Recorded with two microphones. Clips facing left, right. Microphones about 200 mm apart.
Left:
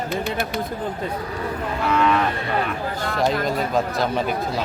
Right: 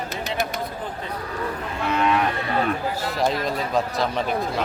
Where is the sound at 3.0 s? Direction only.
Centre (ahead or behind).